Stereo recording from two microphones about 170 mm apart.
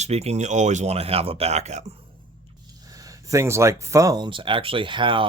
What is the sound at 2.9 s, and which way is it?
Speech, 20° right (ahead or behind).